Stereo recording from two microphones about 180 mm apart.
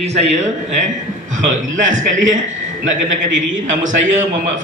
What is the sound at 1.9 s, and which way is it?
Speech, 45° right (ahead or behind).